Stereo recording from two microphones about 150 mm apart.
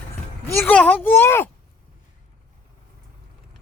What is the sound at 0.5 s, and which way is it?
Speech, 10° left (ahead or behind).